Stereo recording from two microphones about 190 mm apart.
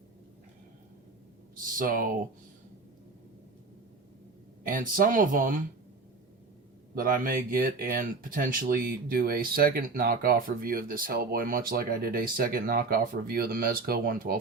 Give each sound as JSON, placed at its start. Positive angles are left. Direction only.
{"t": 1.6, "sound": "speech", "side_deg": -45}
{"t": 4.6, "sound": "speech", "side_deg": -45}
{"t": 6.9, "sound": "speech", "side_deg": -50}